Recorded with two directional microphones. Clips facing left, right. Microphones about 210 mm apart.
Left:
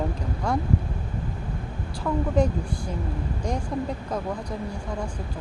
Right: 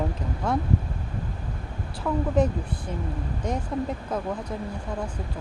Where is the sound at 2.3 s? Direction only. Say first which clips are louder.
Even; 5° right (ahead or behind).